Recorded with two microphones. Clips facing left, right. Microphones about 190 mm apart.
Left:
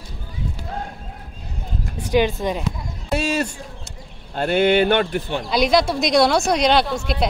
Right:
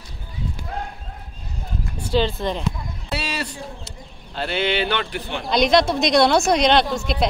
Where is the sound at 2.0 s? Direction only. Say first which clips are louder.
Left 2 dB; 15° left (ahead or behind).